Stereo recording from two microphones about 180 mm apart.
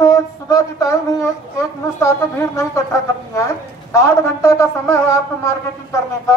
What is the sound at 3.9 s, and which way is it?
Speech, 15° left (ahead or behind).